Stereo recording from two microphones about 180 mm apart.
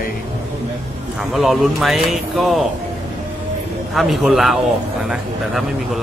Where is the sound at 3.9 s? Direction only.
Centre (ahead or behind).